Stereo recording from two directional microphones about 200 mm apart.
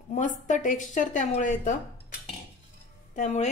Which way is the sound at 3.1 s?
35° left (ahead or behind).